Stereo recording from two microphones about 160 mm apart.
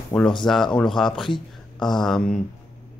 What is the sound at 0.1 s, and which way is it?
Speech, 5° left (ahead or behind).